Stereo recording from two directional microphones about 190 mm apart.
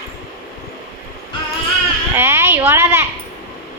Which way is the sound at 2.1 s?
10° right (ahead or behind).